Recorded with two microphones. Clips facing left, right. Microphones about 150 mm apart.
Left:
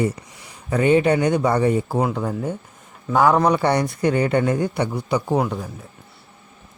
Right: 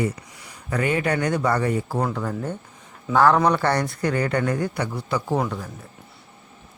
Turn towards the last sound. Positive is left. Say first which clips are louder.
# left 3 dB
turn(degrees=20)  # may be behind; listen again after turning